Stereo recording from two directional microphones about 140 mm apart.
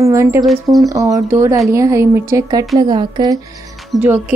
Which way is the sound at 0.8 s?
25° right (ahead or behind).